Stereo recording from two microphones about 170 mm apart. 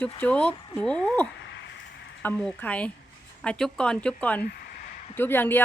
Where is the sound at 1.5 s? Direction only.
90° left.